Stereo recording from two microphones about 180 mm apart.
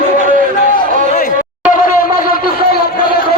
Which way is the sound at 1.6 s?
50° left (ahead or behind).